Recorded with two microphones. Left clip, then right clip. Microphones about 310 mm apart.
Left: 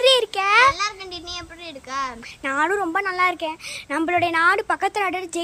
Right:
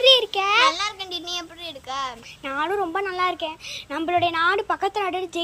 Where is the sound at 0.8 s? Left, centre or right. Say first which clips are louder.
Left 1 dB; right.